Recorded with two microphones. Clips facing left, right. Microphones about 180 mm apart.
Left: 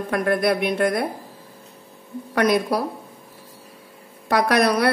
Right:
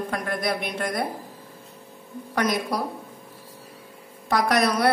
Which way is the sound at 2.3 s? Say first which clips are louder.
Left 5 dB; 60° left (ahead or behind).